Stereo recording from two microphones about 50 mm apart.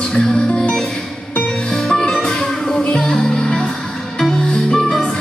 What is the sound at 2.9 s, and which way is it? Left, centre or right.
Music, centre.